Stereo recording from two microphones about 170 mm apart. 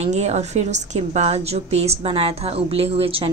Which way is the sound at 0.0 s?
40° right (ahead or behind).